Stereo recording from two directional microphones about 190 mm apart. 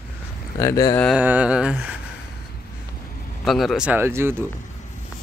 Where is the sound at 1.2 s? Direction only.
10° right (ahead or behind).